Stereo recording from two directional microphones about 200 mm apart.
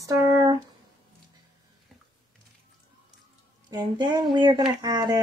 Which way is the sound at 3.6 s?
20° right (ahead or behind).